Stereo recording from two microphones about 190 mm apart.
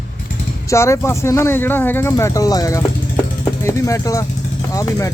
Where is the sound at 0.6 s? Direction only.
15° left (ahead or behind).